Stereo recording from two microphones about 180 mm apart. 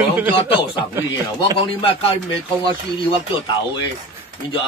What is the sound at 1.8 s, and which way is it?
Speech, 30° left (ahead or behind).